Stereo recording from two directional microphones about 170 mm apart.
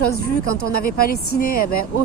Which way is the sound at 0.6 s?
60° left (ahead or behind).